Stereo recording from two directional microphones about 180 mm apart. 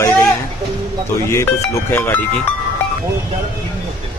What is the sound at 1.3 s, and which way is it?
Speech, 15° left (ahead or behind).